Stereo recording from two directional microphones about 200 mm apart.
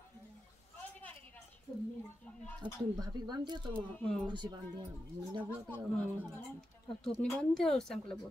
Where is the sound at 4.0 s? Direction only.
5° left (ahead or behind).